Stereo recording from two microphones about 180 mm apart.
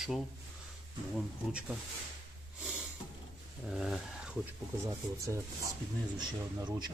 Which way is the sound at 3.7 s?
Centre (ahead or behind).